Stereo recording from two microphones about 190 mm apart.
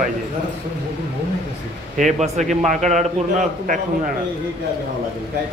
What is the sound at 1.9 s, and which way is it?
A man's voice, 35° right (ahead or behind).